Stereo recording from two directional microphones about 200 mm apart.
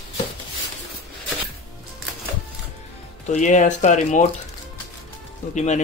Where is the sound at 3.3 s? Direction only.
35° left (ahead or behind).